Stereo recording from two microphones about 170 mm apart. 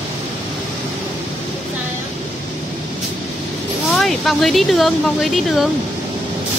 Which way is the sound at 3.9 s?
Centre (ahead or behind).